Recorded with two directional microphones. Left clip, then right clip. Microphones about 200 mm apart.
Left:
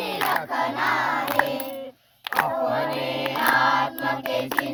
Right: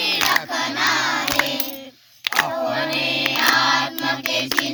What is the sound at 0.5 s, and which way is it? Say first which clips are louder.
Crowd: right 3 dB; 20° right (ahead or behind).